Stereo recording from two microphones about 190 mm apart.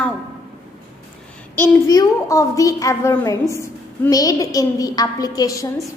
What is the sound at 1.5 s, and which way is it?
A woman's voice, 15° left (ahead or behind).